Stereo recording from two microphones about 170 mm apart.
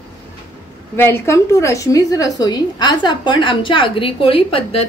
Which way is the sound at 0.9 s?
15° left (ahead or behind).